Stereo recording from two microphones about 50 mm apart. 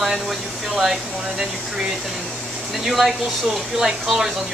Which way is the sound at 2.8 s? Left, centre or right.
Centre.